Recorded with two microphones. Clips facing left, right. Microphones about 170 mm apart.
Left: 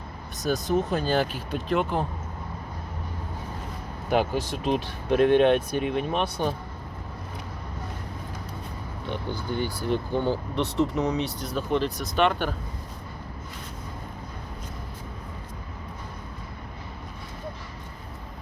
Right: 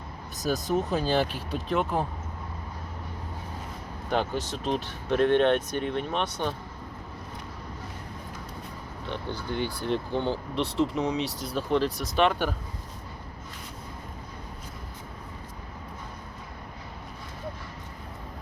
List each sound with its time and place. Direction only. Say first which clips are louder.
0.4 s speech: left 2 dB; centre (ahead or behind)
4.1 s speech: left 4 dB; 10° left (ahead or behind)
9.0 s speech: left 2 dB; 5° left (ahead or behind)
10.5 s speech: left 2 dB; 30° right (ahead or behind)
11.5 s speech: even; centre (ahead or behind)